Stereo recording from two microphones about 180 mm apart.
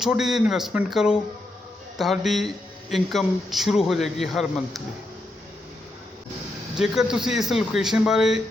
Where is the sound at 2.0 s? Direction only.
Centre (ahead or behind).